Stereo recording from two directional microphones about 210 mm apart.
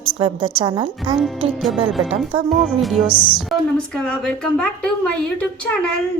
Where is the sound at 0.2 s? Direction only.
25° right (ahead or behind).